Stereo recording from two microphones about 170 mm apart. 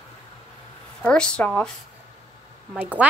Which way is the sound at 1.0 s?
5° left (ahead or behind).